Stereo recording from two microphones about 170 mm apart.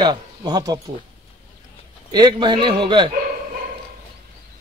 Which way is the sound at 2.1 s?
25° right (ahead or behind).